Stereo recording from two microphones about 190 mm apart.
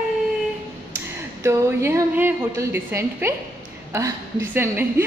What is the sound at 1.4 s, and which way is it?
A woman's voice, 15° right (ahead or behind).